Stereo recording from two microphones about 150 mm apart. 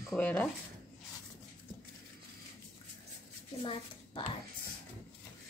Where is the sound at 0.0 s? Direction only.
5° left (ahead or behind).